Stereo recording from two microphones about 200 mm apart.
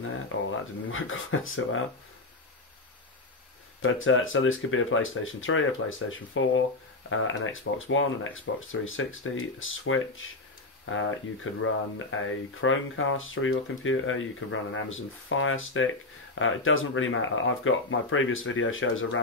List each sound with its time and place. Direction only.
0.3 s speech: 75° left (ahead or behind)
3.8 s speech: 85° left